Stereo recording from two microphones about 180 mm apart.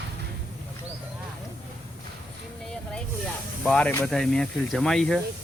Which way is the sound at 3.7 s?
5° left (ahead or behind).